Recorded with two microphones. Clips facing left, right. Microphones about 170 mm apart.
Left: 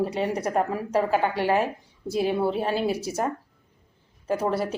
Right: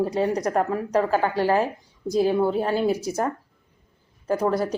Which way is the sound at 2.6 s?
15° left (ahead or behind).